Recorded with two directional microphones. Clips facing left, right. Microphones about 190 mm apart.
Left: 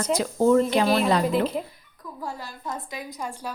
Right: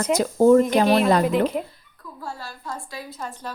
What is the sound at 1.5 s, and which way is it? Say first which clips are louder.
Speech: right 2 dB; 5° right (ahead or behind).